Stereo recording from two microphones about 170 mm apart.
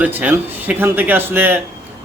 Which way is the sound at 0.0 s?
10° right (ahead or behind).